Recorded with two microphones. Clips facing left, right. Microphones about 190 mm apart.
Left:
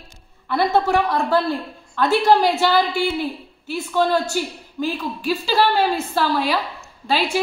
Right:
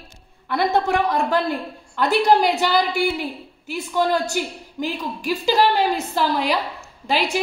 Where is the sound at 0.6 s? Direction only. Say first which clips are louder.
Left 2 dB; 20° right (ahead or behind).